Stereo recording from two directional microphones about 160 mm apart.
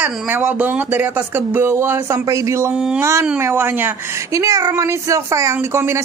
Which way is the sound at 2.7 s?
5° right (ahead or behind).